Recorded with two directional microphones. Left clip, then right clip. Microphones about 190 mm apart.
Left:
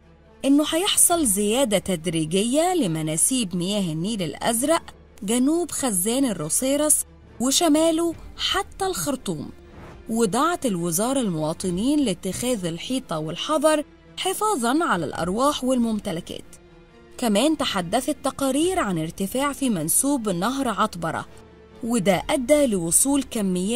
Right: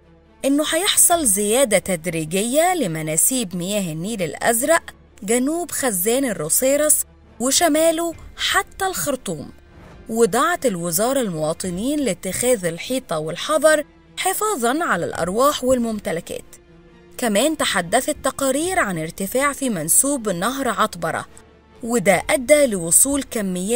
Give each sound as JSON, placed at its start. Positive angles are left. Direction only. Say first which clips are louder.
{"t": 0.4, "sound": "a woman's voice", "louder": "right 1 dB", "side_deg": -15}